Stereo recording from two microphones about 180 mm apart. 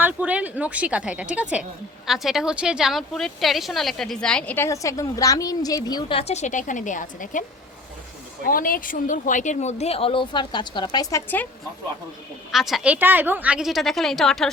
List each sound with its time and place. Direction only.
0.0 s a woman's voice: 10° right (ahead or behind); by 7.4 s 45° left (ahead or behind)
8.4 s speech: 50° left (ahead or behind); by 11.4 s 15° left (ahead or behind)
12.5 s a woman's voice: centre (ahead or behind)